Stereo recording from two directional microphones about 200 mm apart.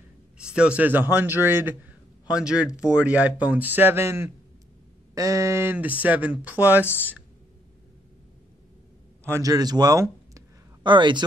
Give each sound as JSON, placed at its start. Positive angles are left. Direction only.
{"t": 0.4, "sound": "speech", "side_deg": -5}
{"t": 9.2, "sound": "a man's voice", "side_deg": -15}